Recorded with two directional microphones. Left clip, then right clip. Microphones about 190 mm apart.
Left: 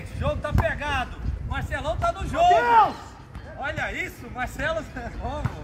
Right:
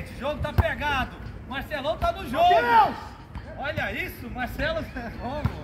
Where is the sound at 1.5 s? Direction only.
5° right (ahead or behind).